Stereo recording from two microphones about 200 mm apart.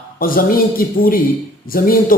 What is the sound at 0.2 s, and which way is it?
A man's voice, 45° left (ahead or behind).